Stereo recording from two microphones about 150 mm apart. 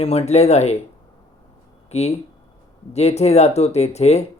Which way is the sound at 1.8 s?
45° left (ahead or behind).